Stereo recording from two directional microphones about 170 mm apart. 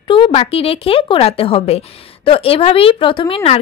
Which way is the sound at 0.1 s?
35° left (ahead or behind).